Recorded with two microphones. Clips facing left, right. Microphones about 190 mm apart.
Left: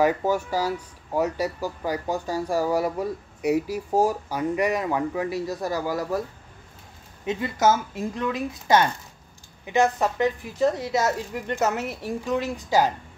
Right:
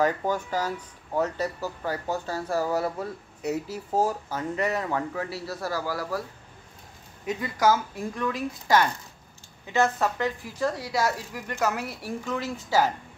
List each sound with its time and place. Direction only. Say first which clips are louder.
0.0 s speech: left 3 dB; 10° left (ahead or behind)
7.2 s speech: left 2 dB; 25° left (ahead or behind)